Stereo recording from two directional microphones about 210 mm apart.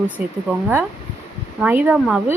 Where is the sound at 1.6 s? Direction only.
10° right (ahead or behind).